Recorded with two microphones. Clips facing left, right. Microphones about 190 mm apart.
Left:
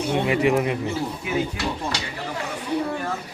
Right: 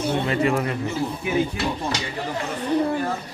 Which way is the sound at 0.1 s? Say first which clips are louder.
Left 3 dB; 15° left (ahead or behind).